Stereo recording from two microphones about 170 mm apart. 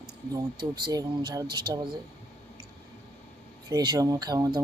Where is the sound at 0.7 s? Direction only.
20° right (ahead or behind).